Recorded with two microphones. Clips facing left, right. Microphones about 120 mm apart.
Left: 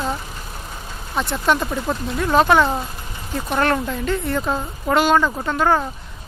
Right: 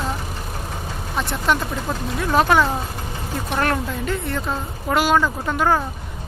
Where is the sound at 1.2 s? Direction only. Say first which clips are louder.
Left 2 dB; centre (ahead or behind).